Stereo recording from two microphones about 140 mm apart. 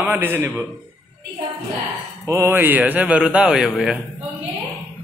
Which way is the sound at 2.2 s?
20° right (ahead or behind).